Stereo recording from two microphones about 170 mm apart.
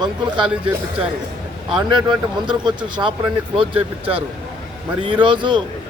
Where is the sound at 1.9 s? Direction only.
25° right (ahead or behind).